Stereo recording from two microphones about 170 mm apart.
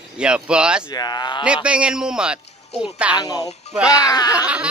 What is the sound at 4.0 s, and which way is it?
Speech, 20° left (ahead or behind).